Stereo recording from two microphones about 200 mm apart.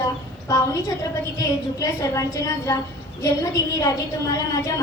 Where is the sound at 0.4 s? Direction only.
15° left (ahead or behind).